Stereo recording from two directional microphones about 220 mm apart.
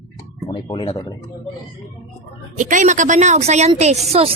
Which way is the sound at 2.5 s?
35° right (ahead or behind).